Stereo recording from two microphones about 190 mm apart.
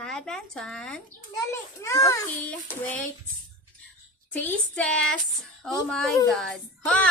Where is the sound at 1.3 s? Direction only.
15° left (ahead or behind).